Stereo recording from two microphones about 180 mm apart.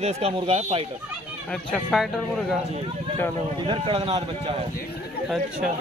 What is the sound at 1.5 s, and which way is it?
Speech, 5° left (ahead or behind).